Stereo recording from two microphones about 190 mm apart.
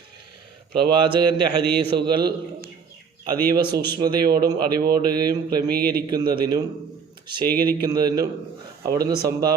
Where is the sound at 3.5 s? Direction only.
20° right (ahead or behind).